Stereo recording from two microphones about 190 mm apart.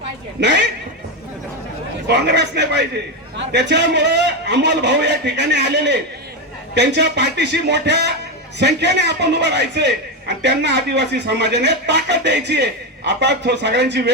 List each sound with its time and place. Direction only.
0.3 s a man's voice: 65° right (ahead or behind)
2.0 s a man's voice: 65° right (ahead or behind)